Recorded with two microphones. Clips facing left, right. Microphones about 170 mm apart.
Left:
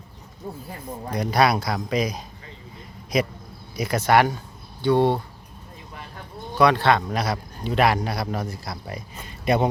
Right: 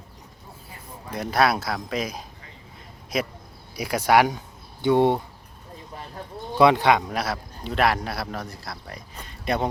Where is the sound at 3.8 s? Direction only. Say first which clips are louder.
Even; 10° right (ahead or behind).